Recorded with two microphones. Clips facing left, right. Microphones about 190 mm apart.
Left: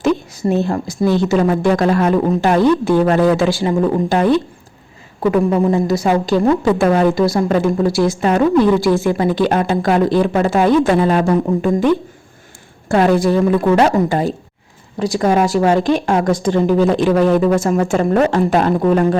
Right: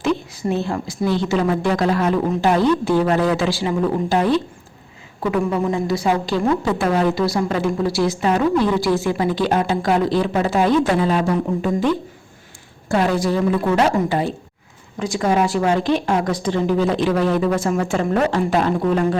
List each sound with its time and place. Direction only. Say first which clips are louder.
0.0 s a woman's voice: left 4 dB; 45° left (ahead or behind)
5.2 s a woman's voice: left 6 dB; 40° left (ahead or behind)
12.9 s a woman's voice: left 5 dB; 55° left (ahead or behind)
14.1 s a woman's voice: left 3 dB; 40° left (ahead or behind)